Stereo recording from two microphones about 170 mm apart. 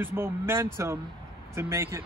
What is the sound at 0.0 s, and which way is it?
Speech, 15° right (ahead or behind).